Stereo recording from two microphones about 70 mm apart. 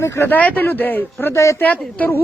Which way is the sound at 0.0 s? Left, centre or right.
Left.